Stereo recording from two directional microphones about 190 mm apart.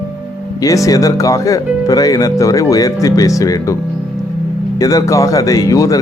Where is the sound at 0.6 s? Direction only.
15° left (ahead or behind).